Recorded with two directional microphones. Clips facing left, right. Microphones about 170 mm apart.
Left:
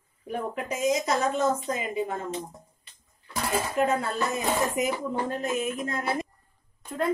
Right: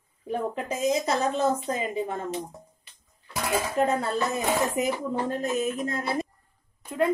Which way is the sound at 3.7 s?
35° right (ahead or behind).